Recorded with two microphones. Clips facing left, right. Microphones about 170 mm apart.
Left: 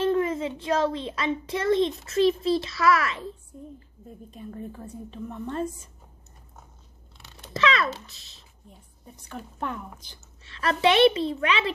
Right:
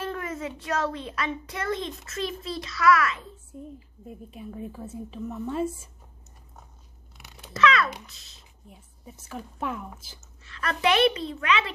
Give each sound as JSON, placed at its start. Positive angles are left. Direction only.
{"t": 0.0, "sound": "a child's voice", "side_deg": 25}
{"t": 4.1, "sound": "speech", "side_deg": -5}
{"t": 7.5, "sound": "a sound", "side_deg": 25}
{"t": 8.6, "sound": "a woman's voice", "side_deg": -5}
{"t": 10.4, "sound": "a child's voice", "side_deg": 30}